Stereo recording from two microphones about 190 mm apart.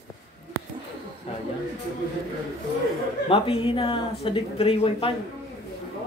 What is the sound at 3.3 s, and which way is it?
Speech, 30° left (ahead or behind).